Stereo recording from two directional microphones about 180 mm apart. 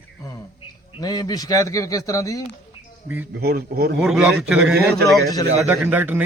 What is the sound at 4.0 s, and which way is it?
A man's voice, 5° right (ahead or behind).